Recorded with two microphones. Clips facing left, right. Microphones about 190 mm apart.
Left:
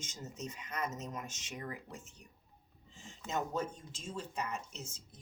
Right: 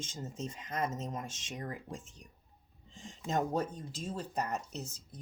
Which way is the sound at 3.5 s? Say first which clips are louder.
Right 4 dB; 40° right (ahead or behind).